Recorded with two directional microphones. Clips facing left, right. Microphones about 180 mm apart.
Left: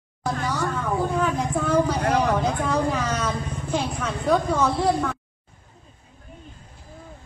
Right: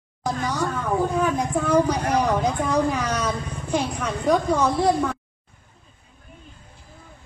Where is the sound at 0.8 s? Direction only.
15° right (ahead or behind).